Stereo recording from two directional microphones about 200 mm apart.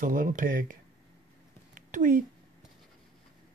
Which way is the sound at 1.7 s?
40° right (ahead or behind).